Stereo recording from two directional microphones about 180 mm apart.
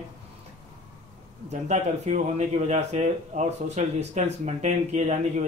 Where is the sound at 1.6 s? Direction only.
40° right (ahead or behind).